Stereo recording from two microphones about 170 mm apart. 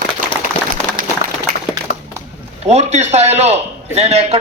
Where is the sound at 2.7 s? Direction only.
40° right (ahead or behind).